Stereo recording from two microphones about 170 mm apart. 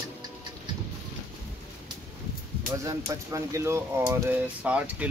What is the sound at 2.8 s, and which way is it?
Speech, 20° right (ahead or behind).